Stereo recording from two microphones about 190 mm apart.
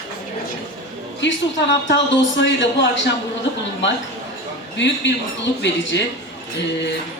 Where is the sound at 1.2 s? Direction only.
75° left (ahead or behind).